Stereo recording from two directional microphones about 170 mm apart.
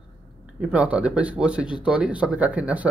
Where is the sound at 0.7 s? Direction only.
10° right (ahead or behind).